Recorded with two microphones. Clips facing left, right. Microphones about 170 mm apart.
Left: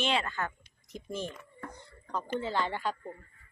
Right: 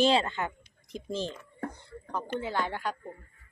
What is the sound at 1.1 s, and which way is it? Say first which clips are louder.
Speech: right 3 dB; 90° right.